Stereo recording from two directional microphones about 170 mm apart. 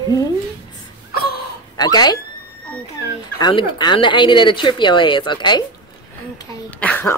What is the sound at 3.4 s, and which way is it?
Speech, 25° left (ahead or behind).